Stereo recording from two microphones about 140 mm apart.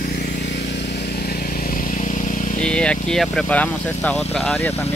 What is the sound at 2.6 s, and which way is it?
Speech, 5° left (ahead or behind).